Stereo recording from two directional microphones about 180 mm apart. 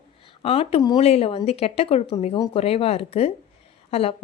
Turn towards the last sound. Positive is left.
turn(degrees=35)  # may be behind; listen again after turning